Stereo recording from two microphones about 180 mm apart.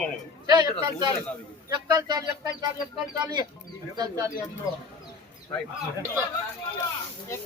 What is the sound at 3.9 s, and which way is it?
Speech, 20° right (ahead or behind).